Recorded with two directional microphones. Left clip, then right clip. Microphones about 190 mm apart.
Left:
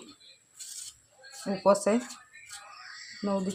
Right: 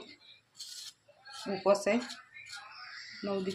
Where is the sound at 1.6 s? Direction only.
35° left (ahead or behind).